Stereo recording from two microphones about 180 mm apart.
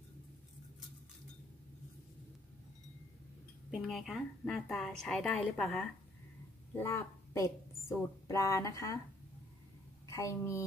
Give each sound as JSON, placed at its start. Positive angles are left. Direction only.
{"t": 3.7, "sound": "a woman's voice", "side_deg": 0}
{"t": 6.8, "sound": "a woman's voice", "side_deg": 15}
{"t": 10.0, "sound": "a woman's voice", "side_deg": 20}